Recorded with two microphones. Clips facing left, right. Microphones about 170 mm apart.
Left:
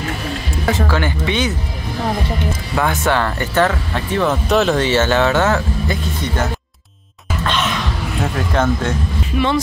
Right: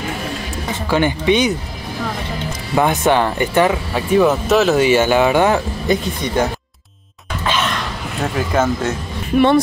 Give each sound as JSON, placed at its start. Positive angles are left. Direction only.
{"t": 0.8, "sound": "speech", "side_deg": -20}
{"t": 2.7, "sound": "speech", "side_deg": -20}
{"t": 7.4, "sound": "a sound", "side_deg": 0}